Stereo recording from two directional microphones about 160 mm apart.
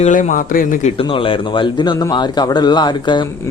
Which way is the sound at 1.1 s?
35° left (ahead or behind).